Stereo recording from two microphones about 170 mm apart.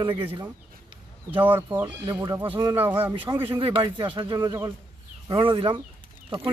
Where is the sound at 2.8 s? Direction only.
10° right (ahead or behind).